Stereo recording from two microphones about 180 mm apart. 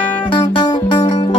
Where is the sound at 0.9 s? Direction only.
25° left (ahead or behind).